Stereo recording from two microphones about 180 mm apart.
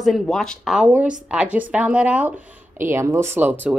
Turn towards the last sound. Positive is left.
turn(degrees=-10)  # may be behind; listen again after turning